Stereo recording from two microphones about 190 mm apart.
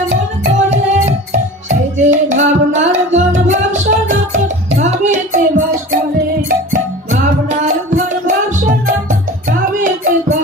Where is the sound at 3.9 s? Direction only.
55° right (ahead or behind).